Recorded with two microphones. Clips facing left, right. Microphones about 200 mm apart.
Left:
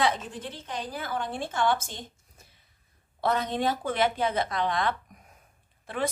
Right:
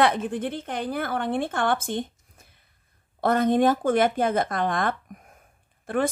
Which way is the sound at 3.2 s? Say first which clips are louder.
Right 7 dB; 50° right (ahead or behind).